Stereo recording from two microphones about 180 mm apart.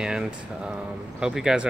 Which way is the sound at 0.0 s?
5° right (ahead or behind).